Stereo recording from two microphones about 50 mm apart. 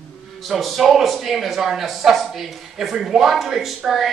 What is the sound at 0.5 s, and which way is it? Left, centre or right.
A man's voice, centre.